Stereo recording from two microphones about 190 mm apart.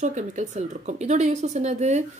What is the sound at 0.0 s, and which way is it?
Speech, 40° right (ahead or behind).